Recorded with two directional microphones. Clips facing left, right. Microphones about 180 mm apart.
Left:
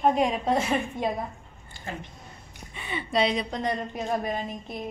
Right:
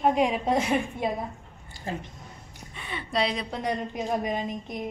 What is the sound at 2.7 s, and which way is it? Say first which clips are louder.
Speech: left 2 dB; centre (ahead or behind).